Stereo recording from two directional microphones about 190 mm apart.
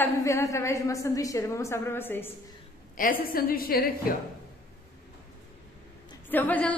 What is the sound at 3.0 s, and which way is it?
Speech, 45° left (ahead or behind).